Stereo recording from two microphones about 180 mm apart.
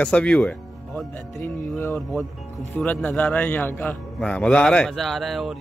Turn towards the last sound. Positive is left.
turn(degrees=0)  # may be behind; listen again after turning